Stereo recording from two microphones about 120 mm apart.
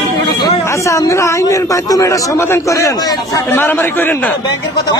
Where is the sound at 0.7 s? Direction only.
25° left (ahead or behind).